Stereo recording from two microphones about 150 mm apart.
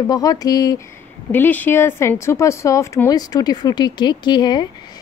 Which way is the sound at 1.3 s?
10° left (ahead or behind).